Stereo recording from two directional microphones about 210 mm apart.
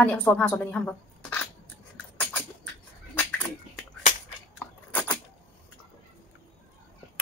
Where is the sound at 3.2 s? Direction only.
5° left (ahead or behind).